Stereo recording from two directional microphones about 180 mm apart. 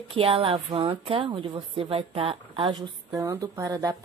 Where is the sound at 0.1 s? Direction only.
30° right (ahead or behind).